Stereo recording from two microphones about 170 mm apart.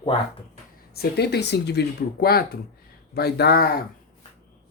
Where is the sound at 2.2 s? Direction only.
65° left (ahead or behind).